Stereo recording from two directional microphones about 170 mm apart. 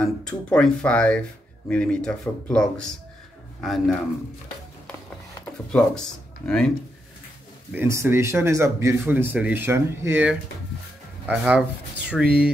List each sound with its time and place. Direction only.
0.0 s speech: 5° left (ahead or behind)
5.4 s speech: 5° left (ahead or behind)
7.7 s speech: 15° right (ahead or behind)